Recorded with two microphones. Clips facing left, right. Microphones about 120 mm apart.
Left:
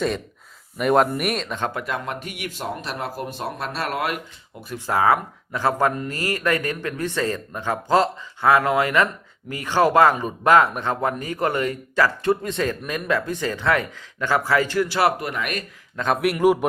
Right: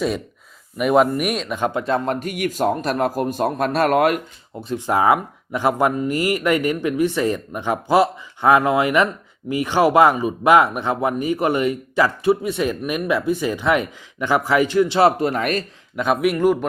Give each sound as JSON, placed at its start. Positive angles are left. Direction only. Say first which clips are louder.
{"t": 0.8, "sound": "speech", "louder": "right 2 dB", "side_deg": -5}
{"t": 1.7, "sound": "speech", "louder": "right 7 dB", "side_deg": -30}
{"t": 2.0, "sound": "a man's voice", "louder": "right 8 dB", "side_deg": -45}
{"t": 4.7, "sound": "speech", "louder": "right 2 dB", "side_deg": -20}
{"t": 16.2, "sound": "a man's voice", "louder": "even", "side_deg": 5}